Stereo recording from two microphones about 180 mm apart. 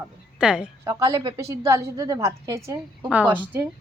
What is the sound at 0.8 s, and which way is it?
A woman's voice, 20° right (ahead or behind).